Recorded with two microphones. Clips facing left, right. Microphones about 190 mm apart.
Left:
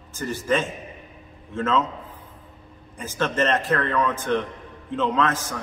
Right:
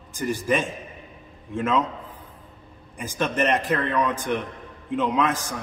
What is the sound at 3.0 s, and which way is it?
A man's voice, 15° right (ahead or behind).